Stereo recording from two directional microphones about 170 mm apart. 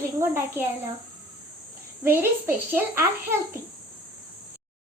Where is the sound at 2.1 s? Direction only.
15° right (ahead or behind).